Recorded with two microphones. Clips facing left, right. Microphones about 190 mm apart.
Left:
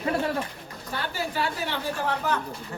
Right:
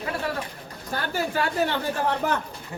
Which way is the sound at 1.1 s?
50° right (ahead or behind).